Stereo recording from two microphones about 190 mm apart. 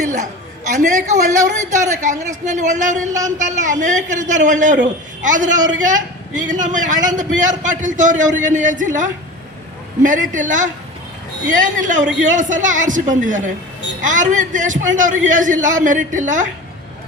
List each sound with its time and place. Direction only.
0.0 s a man's voice: 40° right (ahead or behind)